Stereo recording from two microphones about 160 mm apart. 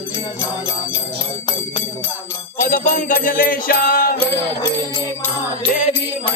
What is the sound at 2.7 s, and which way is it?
Music, 55° left (ahead or behind).